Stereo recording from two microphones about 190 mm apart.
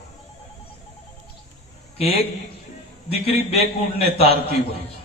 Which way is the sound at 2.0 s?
30° left (ahead or behind).